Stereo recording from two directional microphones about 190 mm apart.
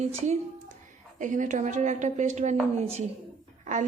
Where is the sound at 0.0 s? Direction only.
35° right (ahead or behind).